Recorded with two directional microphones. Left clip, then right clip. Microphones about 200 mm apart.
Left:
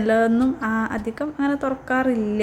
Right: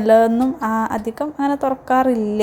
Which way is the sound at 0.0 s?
15° right (ahead or behind).